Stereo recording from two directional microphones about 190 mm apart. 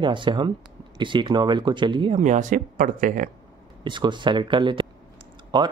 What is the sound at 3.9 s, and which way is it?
Speech, 25° right (ahead or behind).